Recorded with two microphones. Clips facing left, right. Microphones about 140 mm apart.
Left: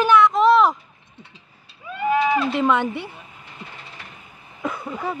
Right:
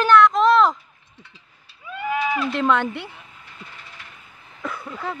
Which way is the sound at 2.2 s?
30° left (ahead or behind).